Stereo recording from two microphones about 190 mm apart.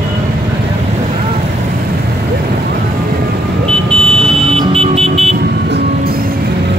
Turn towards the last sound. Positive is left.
turn(degrees=-35)  # may be behind; listen again after turning